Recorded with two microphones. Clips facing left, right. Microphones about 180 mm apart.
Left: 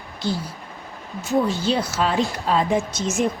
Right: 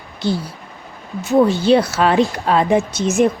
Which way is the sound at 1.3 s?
65° right (ahead or behind).